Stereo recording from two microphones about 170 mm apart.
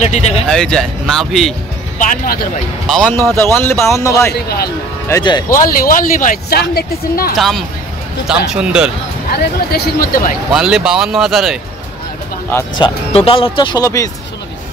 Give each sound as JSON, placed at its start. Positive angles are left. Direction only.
{"t": 0.0, "sound": "speech", "side_deg": 40}
{"t": 0.5, "sound": "speech", "side_deg": 5}
{"t": 2.0, "sound": "speech", "side_deg": 55}
{"t": 2.9, "sound": "speech", "side_deg": 5}
{"t": 3.5, "sound": "speech", "side_deg": 15}
{"t": 4.3, "sound": "speech", "side_deg": 65}
{"t": 5.1, "sound": "speech", "side_deg": 15}
{"t": 5.6, "sound": "speech", "side_deg": 50}
{"t": 6.7, "sound": "speech", "side_deg": 65}
{"t": 7.3, "sound": "speech", "side_deg": 0}
{"t": 9.3, "sound": "speech", "side_deg": 65}
{"t": 10.5, "sound": "speech", "side_deg": -5}
{"t": 12.7, "sound": "speech", "side_deg": 30}